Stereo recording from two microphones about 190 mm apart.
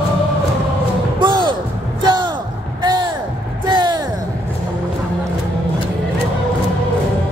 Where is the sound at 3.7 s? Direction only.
20° right (ahead or behind).